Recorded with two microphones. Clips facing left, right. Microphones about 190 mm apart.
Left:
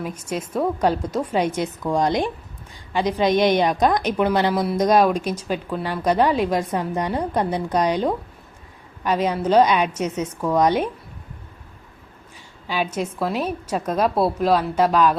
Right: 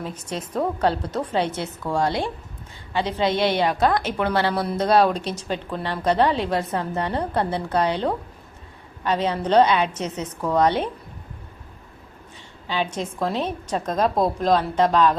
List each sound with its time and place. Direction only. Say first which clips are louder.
0.0 s speech: left 3 dB; 10° left (ahead or behind)
12.6 s speech: left 2 dB; 10° left (ahead or behind)